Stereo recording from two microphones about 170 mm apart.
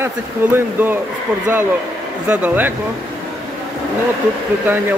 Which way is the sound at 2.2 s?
10° right (ahead or behind).